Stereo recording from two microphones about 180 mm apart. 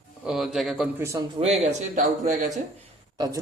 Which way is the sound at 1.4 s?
30° right (ahead or behind).